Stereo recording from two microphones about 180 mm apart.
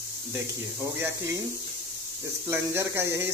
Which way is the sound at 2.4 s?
15° right (ahead or behind).